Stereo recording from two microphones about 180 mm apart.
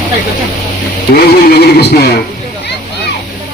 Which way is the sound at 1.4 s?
60° left (ahead or behind).